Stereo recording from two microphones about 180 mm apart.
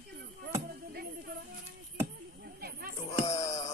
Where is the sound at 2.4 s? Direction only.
55° right (ahead or behind).